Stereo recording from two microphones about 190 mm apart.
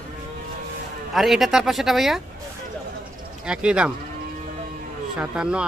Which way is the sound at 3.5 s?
5° right (ahead or behind).